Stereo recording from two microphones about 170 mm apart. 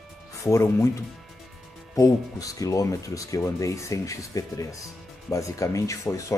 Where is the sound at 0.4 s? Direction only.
20° left (ahead or behind).